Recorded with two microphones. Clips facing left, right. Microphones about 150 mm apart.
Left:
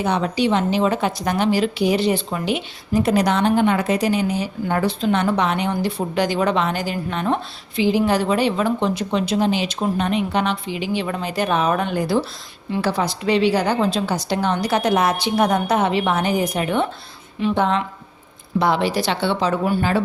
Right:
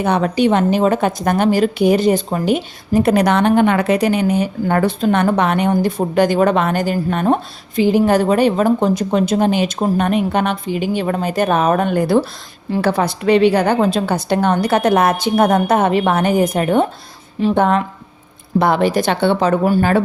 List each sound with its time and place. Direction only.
0.0 s a woman's voice: 55° right (ahead or behind)